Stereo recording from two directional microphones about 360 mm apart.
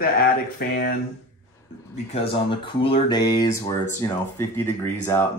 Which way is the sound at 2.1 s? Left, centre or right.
Centre.